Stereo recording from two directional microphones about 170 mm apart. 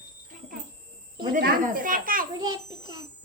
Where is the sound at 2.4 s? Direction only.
25° right (ahead or behind).